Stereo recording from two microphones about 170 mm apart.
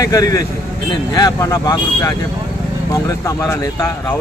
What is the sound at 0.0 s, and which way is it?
Speech, 20° left (ahead or behind).